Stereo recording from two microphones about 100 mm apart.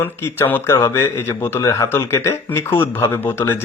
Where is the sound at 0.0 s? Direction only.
25° left (ahead or behind).